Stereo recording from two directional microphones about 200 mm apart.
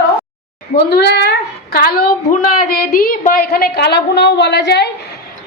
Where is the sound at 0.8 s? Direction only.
55° left (ahead or behind).